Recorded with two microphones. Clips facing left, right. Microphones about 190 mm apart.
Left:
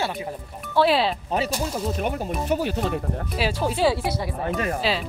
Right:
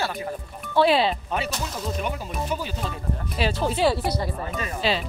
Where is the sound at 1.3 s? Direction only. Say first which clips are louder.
Left 3 dB; 35° left (ahead or behind).